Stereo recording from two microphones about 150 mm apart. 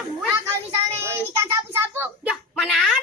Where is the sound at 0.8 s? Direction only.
20° right (ahead or behind).